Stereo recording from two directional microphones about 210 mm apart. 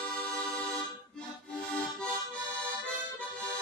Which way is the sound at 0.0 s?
5° left (ahead or behind).